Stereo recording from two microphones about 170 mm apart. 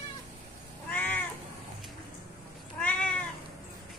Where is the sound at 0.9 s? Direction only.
10° left (ahead or behind).